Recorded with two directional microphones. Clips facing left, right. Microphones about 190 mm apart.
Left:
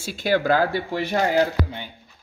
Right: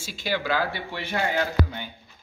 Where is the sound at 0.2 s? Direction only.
50° left (ahead or behind).